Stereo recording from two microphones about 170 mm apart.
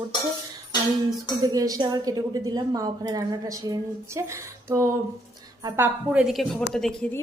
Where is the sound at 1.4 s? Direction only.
20° right (ahead or behind); by 6.7 s centre (ahead or behind).